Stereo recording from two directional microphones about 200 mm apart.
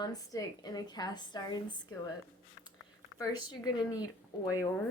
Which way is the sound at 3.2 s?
20° left (ahead or behind).